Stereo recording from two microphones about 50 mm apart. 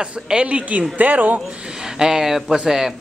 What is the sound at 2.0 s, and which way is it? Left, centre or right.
Speech, centre.